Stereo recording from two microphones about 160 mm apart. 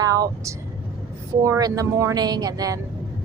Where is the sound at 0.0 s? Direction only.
20° right (ahead or behind).